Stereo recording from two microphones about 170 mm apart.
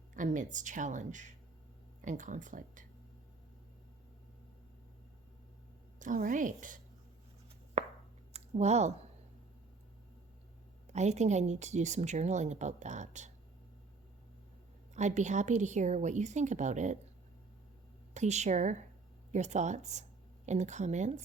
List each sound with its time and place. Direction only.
0.1 s speech: 50° right (ahead or behind)
6.0 s speech: 50° right (ahead or behind)
8.3 s a sound: 40° right (ahead or behind)
10.9 s speech: 40° right (ahead or behind)
14.9 s speech: 45° right (ahead or behind)
18.1 s speech: 40° right (ahead or behind)